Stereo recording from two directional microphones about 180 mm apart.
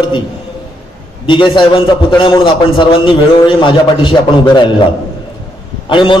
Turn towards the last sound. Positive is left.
turn(degrees=25)  # may be behind; listen again after turning